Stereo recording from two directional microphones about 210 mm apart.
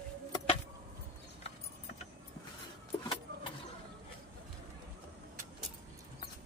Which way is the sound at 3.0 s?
20° left (ahead or behind).